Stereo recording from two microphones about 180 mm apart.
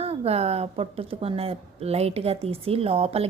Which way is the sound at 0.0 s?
35° right (ahead or behind).